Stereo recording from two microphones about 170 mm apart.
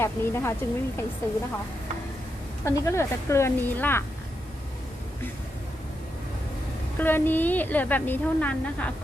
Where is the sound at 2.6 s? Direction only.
15° left (ahead or behind).